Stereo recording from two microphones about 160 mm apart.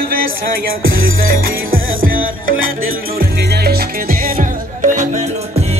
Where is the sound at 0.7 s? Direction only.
65° right (ahead or behind).